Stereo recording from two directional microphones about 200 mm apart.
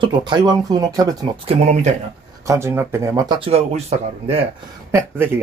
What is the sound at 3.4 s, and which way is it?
Speech, 30° right (ahead or behind).